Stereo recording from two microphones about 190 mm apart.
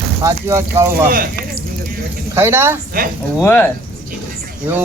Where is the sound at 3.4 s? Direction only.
10° left (ahead or behind).